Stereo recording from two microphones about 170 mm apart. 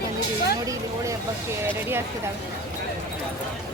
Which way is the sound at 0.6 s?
20° right (ahead or behind).